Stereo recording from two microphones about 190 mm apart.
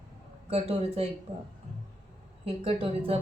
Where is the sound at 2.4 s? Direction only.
30° right (ahead or behind).